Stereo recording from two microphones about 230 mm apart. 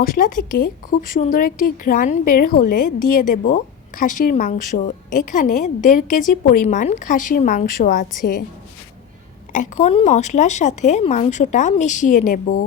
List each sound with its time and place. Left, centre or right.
0.0 s a woman's voice: left
9.5 s a woman's voice: left